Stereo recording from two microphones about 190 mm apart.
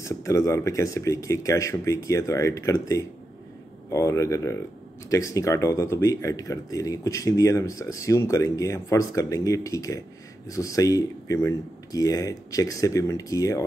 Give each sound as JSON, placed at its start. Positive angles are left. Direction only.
{"t": 0.0, "sound": "speech", "side_deg": 15}